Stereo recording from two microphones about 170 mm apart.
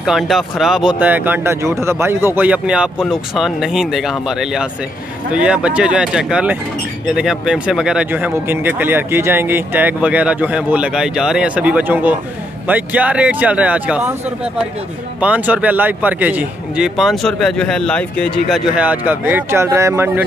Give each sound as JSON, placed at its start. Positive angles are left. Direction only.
{"t": 0.0, "sound": "a man's voice", "side_deg": 0}
{"t": 18.5, "sound": "speech", "side_deg": -10}